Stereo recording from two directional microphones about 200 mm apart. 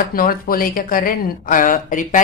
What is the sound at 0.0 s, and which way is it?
A woman's voice, 45° left (ahead or behind).